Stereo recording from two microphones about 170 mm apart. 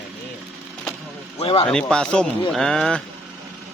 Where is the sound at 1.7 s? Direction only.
5° left (ahead or behind).